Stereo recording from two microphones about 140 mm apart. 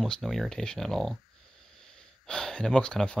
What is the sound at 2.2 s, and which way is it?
Speech, 5° left (ahead or behind).